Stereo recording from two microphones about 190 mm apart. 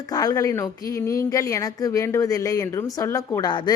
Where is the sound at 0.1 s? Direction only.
20° left (ahead or behind).